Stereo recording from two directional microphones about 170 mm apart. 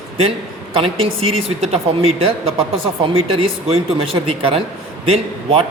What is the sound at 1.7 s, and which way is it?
Speech, 35° right (ahead or behind).